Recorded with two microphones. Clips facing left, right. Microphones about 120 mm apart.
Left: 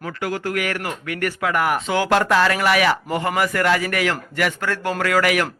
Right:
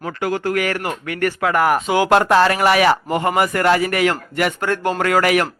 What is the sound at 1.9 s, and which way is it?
A man's voice, 15° right (ahead or behind).